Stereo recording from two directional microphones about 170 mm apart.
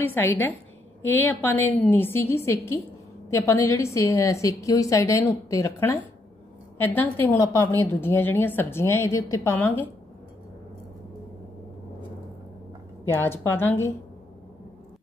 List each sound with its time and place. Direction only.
0.0 s a woman's voice: 10° left (ahead or behind)
13.1 s a woman's voice: 15° left (ahead or behind)